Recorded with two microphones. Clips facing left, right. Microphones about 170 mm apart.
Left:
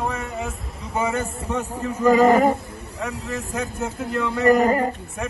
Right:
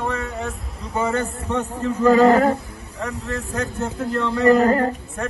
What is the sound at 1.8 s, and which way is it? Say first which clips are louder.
Speech: right 2 dB; 15° left (ahead or behind).